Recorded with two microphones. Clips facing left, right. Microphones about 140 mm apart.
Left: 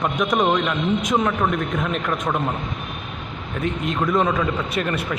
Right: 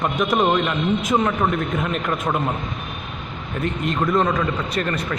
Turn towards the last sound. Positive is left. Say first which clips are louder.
# even
turn(degrees=5)  # may be behind; listen again after turning